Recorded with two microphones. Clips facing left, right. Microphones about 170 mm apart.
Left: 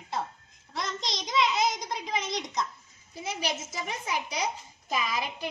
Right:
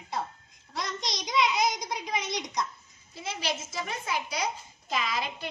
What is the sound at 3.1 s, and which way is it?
A child's voice, 15° left (ahead or behind).